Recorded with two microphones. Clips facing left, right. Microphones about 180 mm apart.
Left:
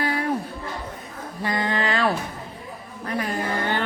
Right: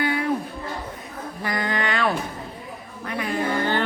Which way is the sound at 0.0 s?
35° left (ahead or behind).